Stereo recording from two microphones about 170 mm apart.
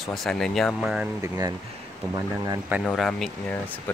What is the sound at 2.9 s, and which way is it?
Speech, 5° left (ahead or behind).